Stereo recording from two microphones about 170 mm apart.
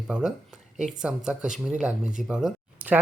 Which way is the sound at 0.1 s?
5° right (ahead or behind).